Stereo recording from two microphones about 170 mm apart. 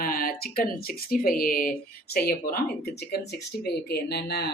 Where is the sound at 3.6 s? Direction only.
70° left (ahead or behind).